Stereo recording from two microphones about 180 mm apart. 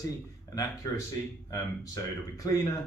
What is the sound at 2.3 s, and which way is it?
Speech, 20° left (ahead or behind).